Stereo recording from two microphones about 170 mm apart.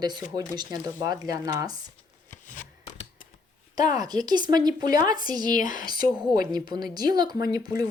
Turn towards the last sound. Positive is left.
turn(degrees=-20)  # may be behind; listen again after turning